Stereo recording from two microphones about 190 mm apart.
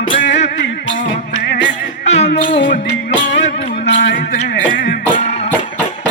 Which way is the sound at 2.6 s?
45° left (ahead or behind).